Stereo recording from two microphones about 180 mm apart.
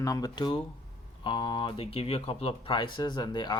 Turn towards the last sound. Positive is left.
turn(degrees=25)  # may be behind; listen again after turning